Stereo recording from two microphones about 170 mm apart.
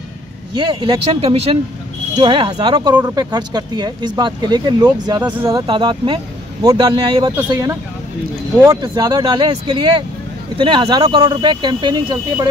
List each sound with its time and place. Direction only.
0.6 s speech: 30° right (ahead or behind)